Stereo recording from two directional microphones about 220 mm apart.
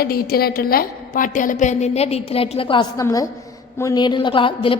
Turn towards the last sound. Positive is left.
turn(degrees=25)  # may be behind; listen again after turning